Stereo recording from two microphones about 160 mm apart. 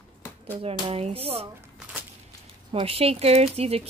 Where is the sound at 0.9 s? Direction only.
40° right (ahead or behind).